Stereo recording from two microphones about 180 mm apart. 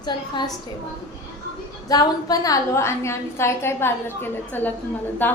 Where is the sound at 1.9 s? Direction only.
20° left (ahead or behind).